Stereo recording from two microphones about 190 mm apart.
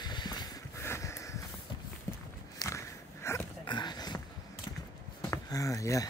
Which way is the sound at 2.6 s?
15° left (ahead or behind).